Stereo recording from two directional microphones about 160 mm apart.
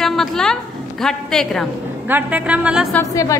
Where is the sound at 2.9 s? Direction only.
20° left (ahead or behind).